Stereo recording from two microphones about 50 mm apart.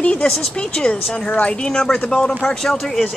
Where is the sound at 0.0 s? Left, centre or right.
Left.